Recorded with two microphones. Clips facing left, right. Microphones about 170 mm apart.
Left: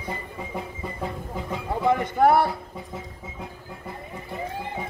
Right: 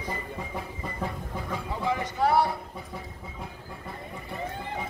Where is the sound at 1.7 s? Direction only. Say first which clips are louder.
Left 8 dB; 55° left (ahead or behind).